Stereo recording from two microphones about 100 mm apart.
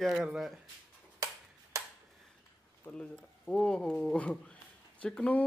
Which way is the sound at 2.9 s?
10° left (ahead or behind).